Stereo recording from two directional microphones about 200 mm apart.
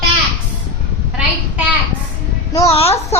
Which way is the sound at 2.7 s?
30° left (ahead or behind).